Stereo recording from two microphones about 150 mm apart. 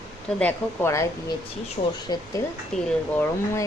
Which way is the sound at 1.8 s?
50° left (ahead or behind).